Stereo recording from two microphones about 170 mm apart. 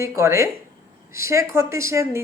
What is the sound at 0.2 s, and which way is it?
Speech, 15° right (ahead or behind).